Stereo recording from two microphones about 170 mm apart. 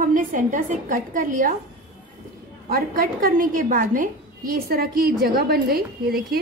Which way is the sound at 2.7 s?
60° right (ahead or behind).